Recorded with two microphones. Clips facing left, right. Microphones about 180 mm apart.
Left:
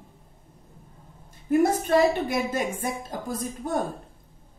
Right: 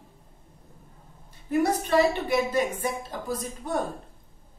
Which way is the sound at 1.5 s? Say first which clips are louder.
Left 3 dB; 45° left (ahead or behind).